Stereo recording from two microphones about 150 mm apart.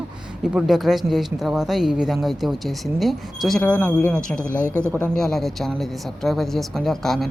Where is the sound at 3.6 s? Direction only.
10° left (ahead or behind).